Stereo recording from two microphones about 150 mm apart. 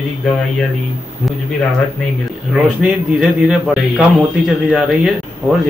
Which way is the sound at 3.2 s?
5° right (ahead or behind).